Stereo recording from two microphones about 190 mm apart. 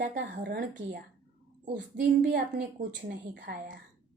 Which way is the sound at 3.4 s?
40° right (ahead or behind).